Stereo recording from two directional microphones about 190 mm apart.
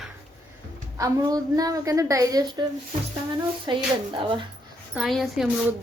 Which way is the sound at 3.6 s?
25° right (ahead or behind).